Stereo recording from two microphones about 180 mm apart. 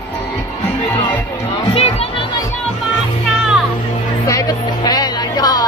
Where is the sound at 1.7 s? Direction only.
35° left (ahead or behind).